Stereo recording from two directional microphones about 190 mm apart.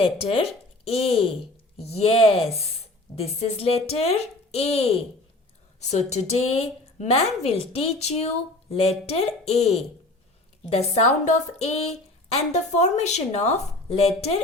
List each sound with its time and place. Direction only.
0.0 s a woman's voice: 30° left (ahead or behind)